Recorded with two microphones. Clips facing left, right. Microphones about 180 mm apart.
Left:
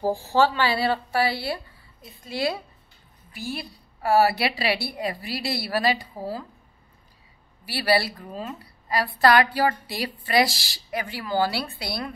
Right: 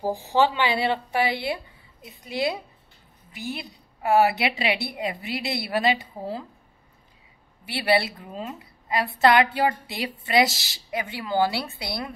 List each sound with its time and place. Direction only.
0.0 s a woman's voice: 15° right (ahead or behind)
7.6 s a woman's voice: 20° right (ahead or behind)